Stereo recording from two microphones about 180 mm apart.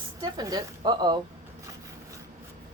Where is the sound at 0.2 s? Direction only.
20° right (ahead or behind).